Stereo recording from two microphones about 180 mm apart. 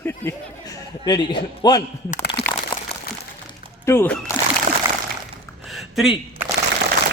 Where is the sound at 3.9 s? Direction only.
15° left (ahead or behind).